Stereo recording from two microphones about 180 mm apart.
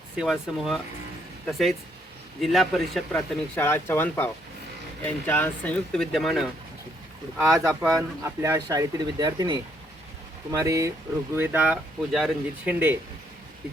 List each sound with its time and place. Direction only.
0.2 s speech: centre (ahead or behind)
7.3 s speech: 15° right (ahead or behind)